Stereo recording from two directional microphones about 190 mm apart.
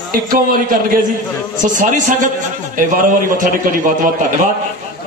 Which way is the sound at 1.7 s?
45° right (ahead or behind).